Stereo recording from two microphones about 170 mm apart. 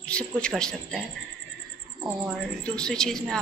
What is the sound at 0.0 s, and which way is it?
Speech, 5° left (ahead or behind).